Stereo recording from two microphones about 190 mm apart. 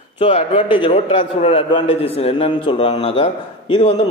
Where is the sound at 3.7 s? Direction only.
35° left (ahead or behind).